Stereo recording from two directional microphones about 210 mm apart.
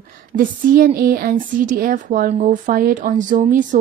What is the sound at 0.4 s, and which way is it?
A woman's voice, 40° right (ahead or behind).